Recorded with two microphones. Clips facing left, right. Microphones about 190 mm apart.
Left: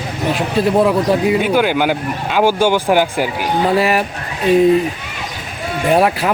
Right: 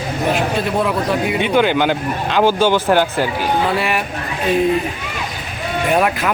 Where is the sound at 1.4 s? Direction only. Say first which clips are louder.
Even; 5° left (ahead or behind).